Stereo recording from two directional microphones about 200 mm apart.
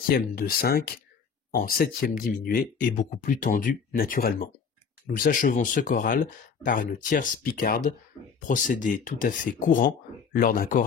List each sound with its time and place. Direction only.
0.1 s speech: 45° left (ahead or behind)